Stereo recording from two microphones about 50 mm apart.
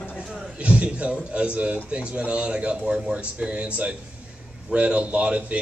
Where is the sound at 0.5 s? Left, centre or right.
Right.